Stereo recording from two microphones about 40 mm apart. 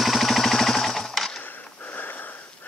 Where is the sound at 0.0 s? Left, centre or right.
Centre.